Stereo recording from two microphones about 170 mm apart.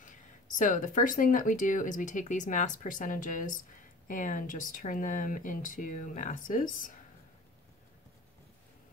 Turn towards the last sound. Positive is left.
turn(degrees=50)  # may be behind; listen again after turning